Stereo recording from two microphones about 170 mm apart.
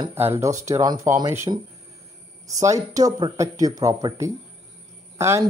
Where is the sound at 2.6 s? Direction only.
20° right (ahead or behind).